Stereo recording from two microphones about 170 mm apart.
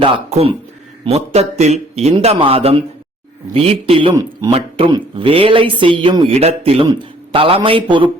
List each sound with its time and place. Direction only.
0.0 s speech: 35° right (ahead or behind)
4.1 s speech: 20° right (ahead or behind)
4.9 s speech: 30° right (ahead or behind)